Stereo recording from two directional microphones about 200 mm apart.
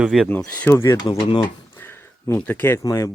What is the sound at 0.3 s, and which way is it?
Speech, 10° left (ahead or behind).